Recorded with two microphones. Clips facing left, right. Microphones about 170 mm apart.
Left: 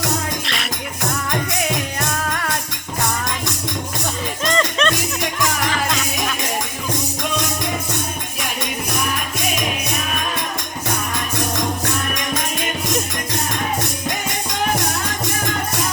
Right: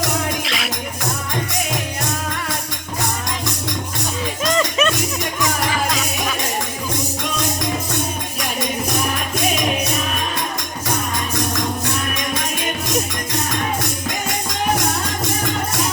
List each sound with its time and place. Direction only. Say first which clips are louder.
0.4 s music: right 2 dB; centre (ahead or behind)
4.5 s music: even; 5° right (ahead or behind)